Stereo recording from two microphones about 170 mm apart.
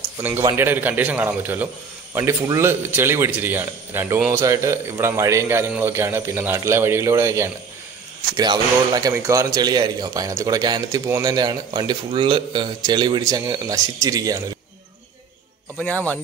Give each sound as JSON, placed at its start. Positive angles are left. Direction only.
{"t": 0.2, "sound": "a man's voice", "side_deg": -10}